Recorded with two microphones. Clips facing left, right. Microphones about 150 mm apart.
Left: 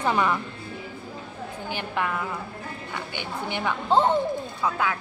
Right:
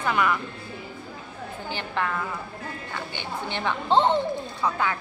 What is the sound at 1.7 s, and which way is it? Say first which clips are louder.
Speech: even; 10° left (ahead or behind).